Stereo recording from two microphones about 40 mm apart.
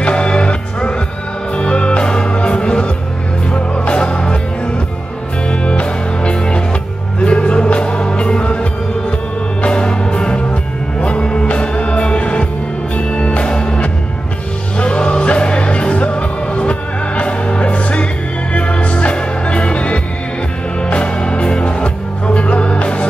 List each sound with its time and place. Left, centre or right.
0.0 s music: left
5.6 s music: left